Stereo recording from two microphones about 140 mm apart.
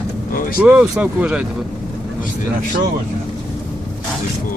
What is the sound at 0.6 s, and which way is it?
Speech, 10° right (ahead or behind).